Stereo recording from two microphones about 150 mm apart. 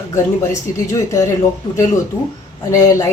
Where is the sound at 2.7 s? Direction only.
20° left (ahead or behind).